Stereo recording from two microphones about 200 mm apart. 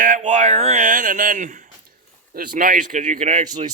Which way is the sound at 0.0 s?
40° right (ahead or behind).